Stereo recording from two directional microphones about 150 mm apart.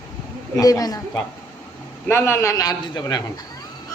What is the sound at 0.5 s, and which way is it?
Speech, 25° left (ahead or behind).